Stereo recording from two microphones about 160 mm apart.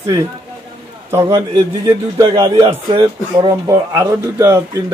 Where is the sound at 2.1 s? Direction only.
30° right (ahead or behind).